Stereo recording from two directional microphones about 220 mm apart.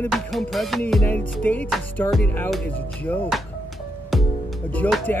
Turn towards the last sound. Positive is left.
turn(degrees=5)  # may be behind; listen again after turning